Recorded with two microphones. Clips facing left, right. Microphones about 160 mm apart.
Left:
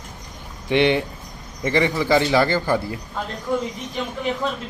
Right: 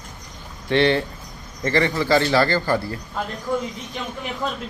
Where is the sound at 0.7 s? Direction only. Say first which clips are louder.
Even; 15° left (ahead or behind).